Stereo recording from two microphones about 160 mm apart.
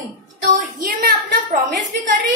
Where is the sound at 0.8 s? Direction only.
70° right (ahead or behind).